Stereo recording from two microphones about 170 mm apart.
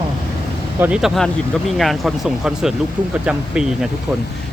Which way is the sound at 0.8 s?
5° right (ahead or behind).